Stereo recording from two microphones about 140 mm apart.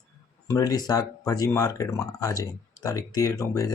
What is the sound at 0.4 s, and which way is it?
Speech, 25° left (ahead or behind).